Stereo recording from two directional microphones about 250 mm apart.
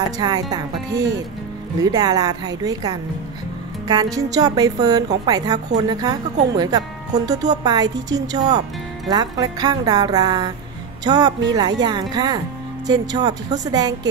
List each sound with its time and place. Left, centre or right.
0.2 s a woman's voice: centre